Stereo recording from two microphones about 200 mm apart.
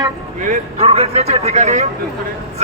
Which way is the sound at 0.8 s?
30° right (ahead or behind).